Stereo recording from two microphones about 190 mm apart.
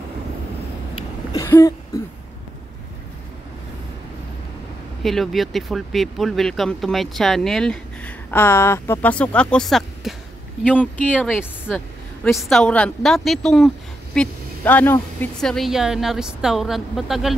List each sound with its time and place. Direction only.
1.3 s throat clearing: 15° left (ahead or behind)
1.9 s speech: 20° left (ahead or behind)
5.0 s speech: centre (ahead or behind)